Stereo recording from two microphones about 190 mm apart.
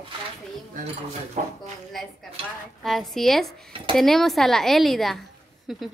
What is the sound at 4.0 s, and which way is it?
Speech, centre (ahead or behind).